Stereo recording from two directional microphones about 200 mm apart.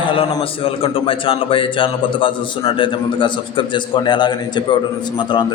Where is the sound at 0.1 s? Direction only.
25° left (ahead or behind).